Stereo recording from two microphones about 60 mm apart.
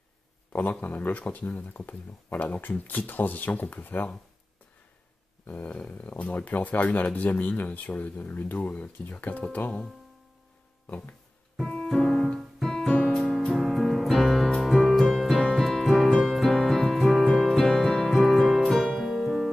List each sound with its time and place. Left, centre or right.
0.5 s speech: left
5.5 s speech: left
11.5 s music: centre
13.6 s music: centre
18.2 s music: centre